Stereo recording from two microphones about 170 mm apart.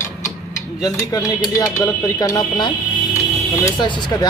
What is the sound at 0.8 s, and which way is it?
Speech, 25° left (ahead or behind).